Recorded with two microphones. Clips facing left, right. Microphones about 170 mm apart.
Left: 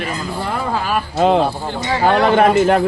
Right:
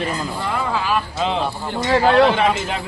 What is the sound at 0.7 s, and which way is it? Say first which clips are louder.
A man's voice: left 2 dB; 55° left (ahead or behind).